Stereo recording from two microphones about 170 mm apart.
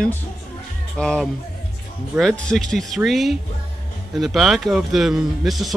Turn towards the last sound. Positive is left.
turn(degrees=0)  # may be behind; listen again after turning